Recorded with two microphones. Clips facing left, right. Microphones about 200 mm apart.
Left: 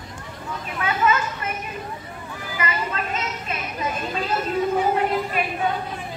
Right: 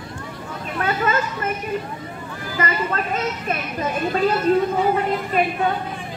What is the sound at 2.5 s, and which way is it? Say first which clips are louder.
Speech: right 4 dB; 50° right (ahead or behind).